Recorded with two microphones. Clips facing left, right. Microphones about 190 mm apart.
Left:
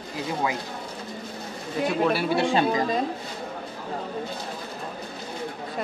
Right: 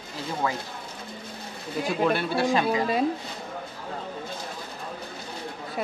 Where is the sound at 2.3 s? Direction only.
30° left (ahead or behind).